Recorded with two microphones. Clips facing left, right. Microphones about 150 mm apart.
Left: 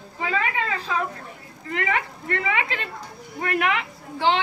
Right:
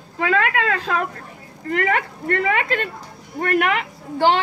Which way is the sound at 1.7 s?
50° right (ahead or behind).